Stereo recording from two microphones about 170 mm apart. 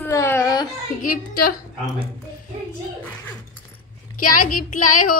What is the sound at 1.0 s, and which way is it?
Child singing, 60° left (ahead or behind).